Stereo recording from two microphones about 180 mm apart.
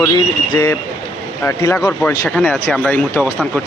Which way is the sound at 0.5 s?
15° left (ahead or behind).